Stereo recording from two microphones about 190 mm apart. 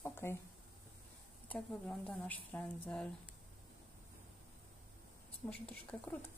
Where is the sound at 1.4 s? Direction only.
5° left (ahead or behind).